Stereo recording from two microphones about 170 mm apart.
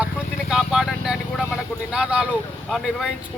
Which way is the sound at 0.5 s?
Centre (ahead or behind).